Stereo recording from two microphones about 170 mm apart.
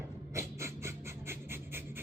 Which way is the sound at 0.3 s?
15° right (ahead or behind).